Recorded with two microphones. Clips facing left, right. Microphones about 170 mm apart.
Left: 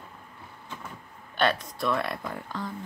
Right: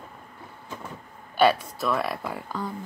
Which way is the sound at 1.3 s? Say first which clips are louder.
Right 6 dB; 10° right (ahead or behind).